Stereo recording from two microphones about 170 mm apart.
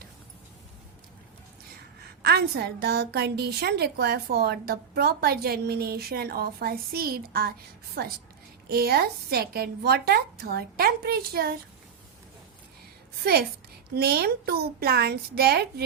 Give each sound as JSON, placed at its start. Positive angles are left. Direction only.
{"t": 2.2, "sound": "a woman's voice", "side_deg": -70}
{"t": 13.9, "sound": "a woman's voice", "side_deg": -65}